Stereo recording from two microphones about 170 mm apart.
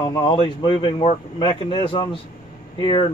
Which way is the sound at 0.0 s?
25° left (ahead or behind).